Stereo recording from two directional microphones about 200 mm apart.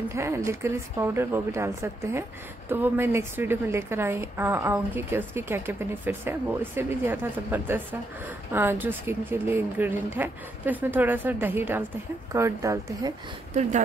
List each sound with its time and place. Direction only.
0.1 s a woman's voice: 15° right (ahead or behind)